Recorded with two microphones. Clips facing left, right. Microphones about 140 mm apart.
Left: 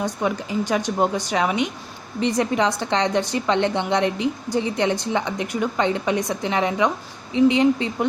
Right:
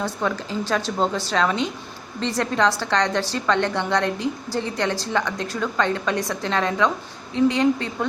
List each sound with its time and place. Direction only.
0.0 s a woman's voice: 15° left (ahead or behind)